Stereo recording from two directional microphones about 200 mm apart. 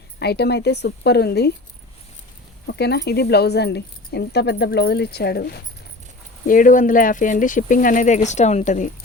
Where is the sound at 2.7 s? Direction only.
55° left (ahead or behind).